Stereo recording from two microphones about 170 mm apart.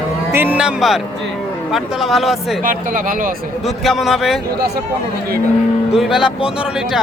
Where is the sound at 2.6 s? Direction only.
50° right (ahead or behind).